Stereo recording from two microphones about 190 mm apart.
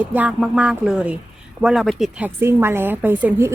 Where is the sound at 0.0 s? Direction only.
10° right (ahead or behind).